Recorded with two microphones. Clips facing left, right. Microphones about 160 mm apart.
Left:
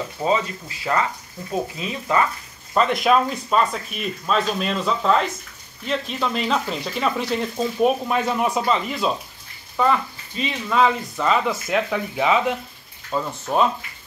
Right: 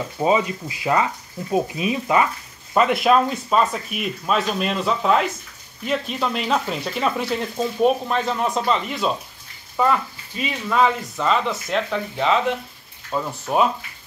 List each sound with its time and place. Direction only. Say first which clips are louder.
0.2 s speech: right 3 dB; 15° right (ahead or behind)
2.7 s speech: right 1 dB; 5° right (ahead or behind)
8.1 s speech: left 1 dB; 10° left (ahead or behind)
13.1 s speech: even; 10° right (ahead or behind)